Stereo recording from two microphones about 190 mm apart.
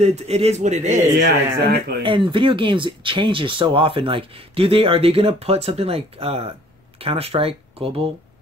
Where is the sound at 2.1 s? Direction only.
25° right (ahead or behind).